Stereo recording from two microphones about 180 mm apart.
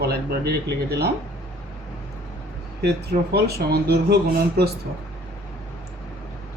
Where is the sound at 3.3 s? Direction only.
60° right (ahead or behind).